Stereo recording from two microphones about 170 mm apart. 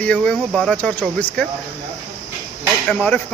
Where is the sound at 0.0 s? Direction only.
5° left (ahead or behind).